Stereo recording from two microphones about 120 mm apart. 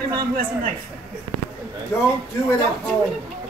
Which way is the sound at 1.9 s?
20° left (ahead or behind).